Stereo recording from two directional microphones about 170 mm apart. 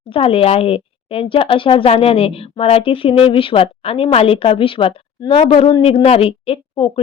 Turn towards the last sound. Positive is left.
turn(degrees=35)  # may be behind; listen again after turning